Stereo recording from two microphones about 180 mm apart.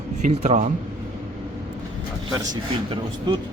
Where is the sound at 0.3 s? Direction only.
40° right (ahead or behind).